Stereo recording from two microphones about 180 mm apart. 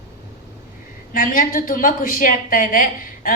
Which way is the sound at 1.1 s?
50° left (ahead or behind).